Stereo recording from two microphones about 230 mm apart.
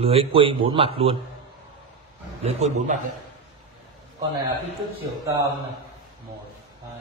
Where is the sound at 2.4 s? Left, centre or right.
Right.